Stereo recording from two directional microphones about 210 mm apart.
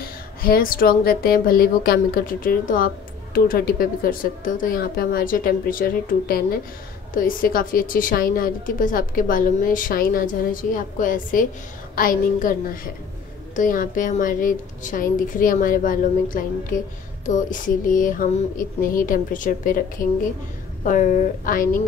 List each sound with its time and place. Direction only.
0.4 s a woman's voice: 45° left (ahead or behind)